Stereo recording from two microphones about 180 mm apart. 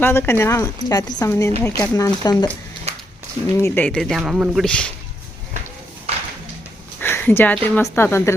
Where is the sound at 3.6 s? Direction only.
10° left (ahead or behind).